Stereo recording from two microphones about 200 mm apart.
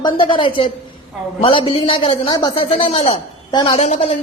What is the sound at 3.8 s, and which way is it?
Speech, 30° left (ahead or behind).